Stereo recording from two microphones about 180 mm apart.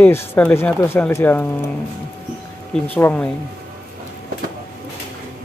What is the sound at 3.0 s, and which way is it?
Speech, 10° left (ahead or behind).